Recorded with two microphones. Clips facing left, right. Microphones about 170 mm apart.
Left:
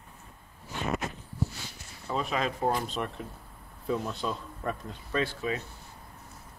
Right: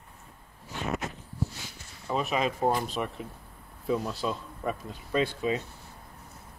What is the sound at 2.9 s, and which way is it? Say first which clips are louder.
A man's voice: right 1 dB; centre (ahead or behind).